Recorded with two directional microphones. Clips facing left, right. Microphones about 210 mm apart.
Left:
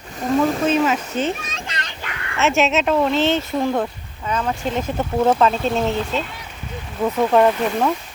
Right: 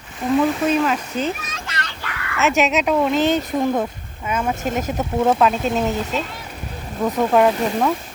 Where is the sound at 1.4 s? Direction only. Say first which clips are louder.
Even; 25° left (ahead or behind).